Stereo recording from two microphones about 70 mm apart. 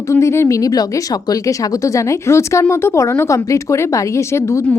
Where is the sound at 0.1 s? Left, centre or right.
Left.